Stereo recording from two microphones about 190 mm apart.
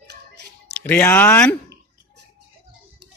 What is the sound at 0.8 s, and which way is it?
Speech, 10° left (ahead or behind).